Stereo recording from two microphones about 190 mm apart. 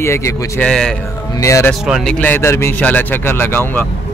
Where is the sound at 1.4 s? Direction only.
15° left (ahead or behind).